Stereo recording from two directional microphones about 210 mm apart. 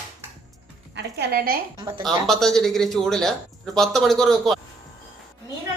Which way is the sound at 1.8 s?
20° right (ahead or behind).